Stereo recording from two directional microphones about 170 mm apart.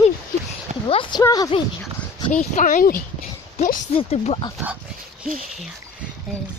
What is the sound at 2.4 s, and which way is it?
Speech, 50° left (ahead or behind).